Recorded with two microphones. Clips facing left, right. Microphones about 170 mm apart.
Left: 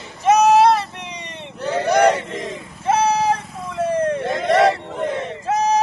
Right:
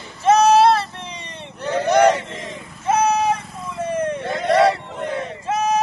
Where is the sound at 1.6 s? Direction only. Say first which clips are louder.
Right 1 dB; 10° left (ahead or behind).